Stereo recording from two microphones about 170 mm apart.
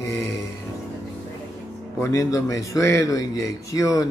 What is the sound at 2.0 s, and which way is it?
A man's voice, 20° left (ahead or behind).